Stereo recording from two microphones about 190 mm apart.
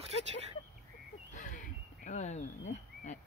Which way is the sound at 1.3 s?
40° left (ahead or behind).